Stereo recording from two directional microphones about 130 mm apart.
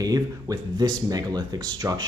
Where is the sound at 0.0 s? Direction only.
30° right (ahead or behind).